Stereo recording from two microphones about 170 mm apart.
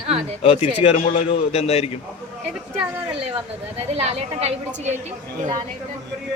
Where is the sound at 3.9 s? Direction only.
35° right (ahead or behind).